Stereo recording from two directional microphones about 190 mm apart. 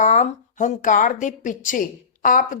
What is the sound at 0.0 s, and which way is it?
Speech, 40° left (ahead or behind).